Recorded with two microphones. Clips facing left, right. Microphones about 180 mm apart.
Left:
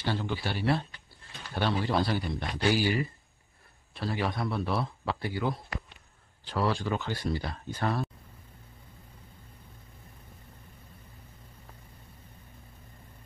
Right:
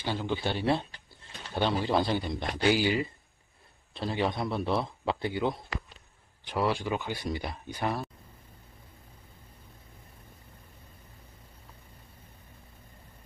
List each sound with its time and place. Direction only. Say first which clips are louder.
0.0 s a man's voice: right 1 dB; 15° right (ahead or behind)